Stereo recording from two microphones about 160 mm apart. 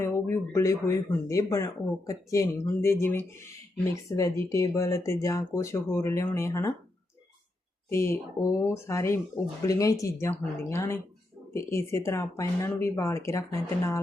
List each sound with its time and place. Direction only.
0.0 s speech: 15° left (ahead or behind)
7.9 s speech: 15° left (ahead or behind)